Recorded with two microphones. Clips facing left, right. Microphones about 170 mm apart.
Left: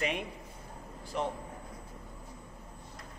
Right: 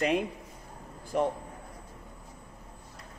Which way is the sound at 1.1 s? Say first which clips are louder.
Right 6 dB; 50° right (ahead or behind).